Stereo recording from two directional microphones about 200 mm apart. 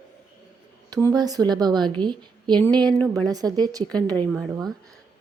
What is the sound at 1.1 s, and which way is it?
A woman's voice, 20° right (ahead or behind).